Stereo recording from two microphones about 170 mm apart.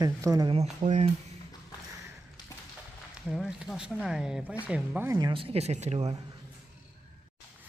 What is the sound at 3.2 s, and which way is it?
Speech, centre (ahead or behind).